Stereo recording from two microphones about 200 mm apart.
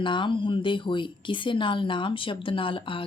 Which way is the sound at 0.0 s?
25° left (ahead or behind).